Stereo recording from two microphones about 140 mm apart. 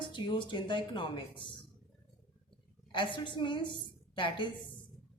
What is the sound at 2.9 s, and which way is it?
A woman's voice, 35° left (ahead or behind).